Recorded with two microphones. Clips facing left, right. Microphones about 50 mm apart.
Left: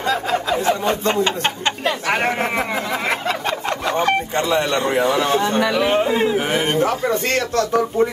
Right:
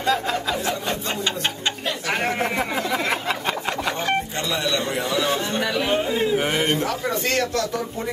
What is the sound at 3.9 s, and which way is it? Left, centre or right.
Speech, left.